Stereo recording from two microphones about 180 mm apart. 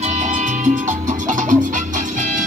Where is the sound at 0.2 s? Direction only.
45° right (ahead or behind).